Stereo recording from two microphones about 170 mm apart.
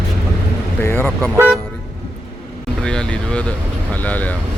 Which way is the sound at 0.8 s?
10° left (ahead or behind).